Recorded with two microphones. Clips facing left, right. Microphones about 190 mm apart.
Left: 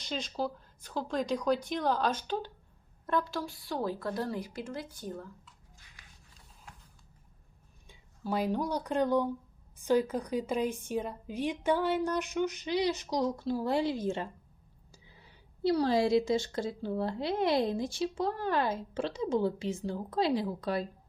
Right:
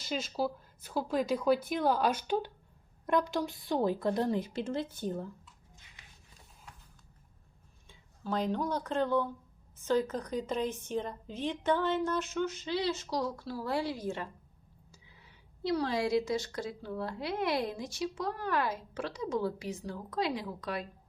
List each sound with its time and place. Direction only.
0.0 s a woman's voice: 5° right (ahead or behind); by 5.3 s 25° right (ahead or behind)
7.9 s a woman's voice: 10° left (ahead or behind); by 20.8 s 35° left (ahead or behind)